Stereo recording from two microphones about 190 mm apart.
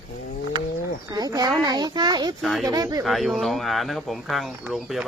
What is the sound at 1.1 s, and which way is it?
A child's voice, 20° right (ahead or behind).